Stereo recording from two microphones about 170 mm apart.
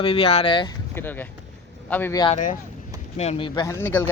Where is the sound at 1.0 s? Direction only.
10° left (ahead or behind).